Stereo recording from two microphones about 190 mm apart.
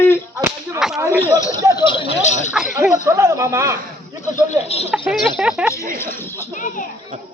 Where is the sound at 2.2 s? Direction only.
40° left (ahead or behind).